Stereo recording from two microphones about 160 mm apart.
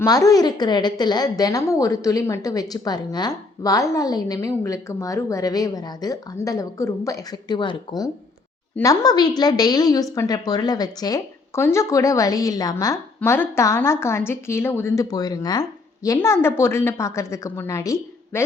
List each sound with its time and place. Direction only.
0.0 s a woman's voice: 20° left (ahead or behind)